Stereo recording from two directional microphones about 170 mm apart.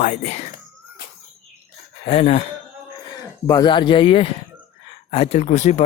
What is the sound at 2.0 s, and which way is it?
Speech, 40° left (ahead or behind).